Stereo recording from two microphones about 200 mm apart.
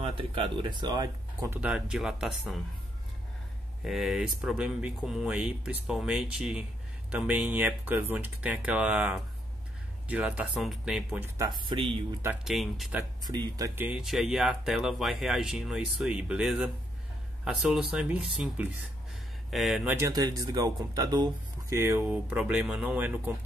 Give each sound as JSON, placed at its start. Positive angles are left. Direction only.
{"t": 0.0, "sound": "speech", "side_deg": -25}
{"t": 1.6, "sound": "speech", "side_deg": -5}
{"t": 3.8, "sound": "speech", "side_deg": 0}
{"t": 11.3, "sound": "speech", "side_deg": -20}
{"t": 12.2, "sound": "speech", "side_deg": -5}
{"t": 13.2, "sound": "speech", "side_deg": -20}
{"t": 13.7, "sound": "speech", "side_deg": -5}